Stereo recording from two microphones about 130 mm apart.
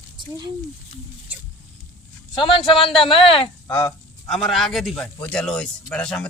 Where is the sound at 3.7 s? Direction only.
15° left (ahead or behind).